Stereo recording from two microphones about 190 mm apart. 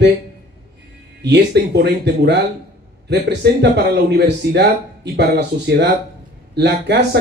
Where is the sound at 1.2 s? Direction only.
60° right (ahead or behind).